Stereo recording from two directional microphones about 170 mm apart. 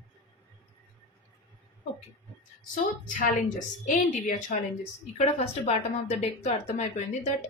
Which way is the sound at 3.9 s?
50° left (ahead or behind).